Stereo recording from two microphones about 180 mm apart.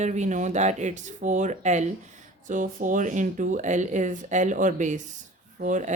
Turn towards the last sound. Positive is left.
turn(degrees=-45)  # may be behind; listen again after turning